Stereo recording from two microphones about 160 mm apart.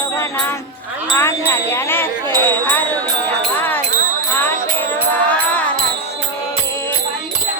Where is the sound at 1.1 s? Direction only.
15° left (ahead or behind).